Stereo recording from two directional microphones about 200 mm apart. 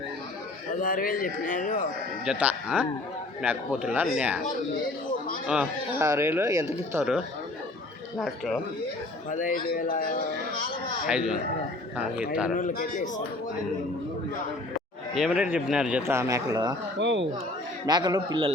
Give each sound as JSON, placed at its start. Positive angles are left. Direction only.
{"t": 0.8, "sound": "speech", "side_deg": 45}
{"t": 2.2, "sound": "speech", "side_deg": -5}
{"t": 6.0, "sound": "speech", "side_deg": -15}
{"t": 6.7, "sound": "speech", "side_deg": -5}
{"t": 9.3, "sound": "a man's voice", "side_deg": 40}
{"t": 12.5, "sound": "a man's voice", "side_deg": 40}
{"t": 15.1, "sound": "speech", "side_deg": -5}
{"t": 17.0, "sound": "speech", "side_deg": -65}
{"t": 17.8, "sound": "a man's voice", "side_deg": -20}